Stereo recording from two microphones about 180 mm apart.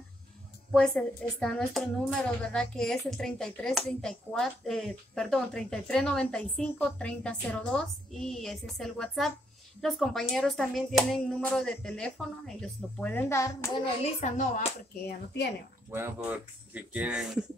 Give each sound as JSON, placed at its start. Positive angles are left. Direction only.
{"t": 0.7, "sound": "speech", "side_deg": 5}
{"t": 14.0, "sound": "a woman's voice", "side_deg": 35}
{"t": 15.0, "sound": "a woman's voice", "side_deg": 60}
{"t": 15.9, "sound": "speech", "side_deg": -15}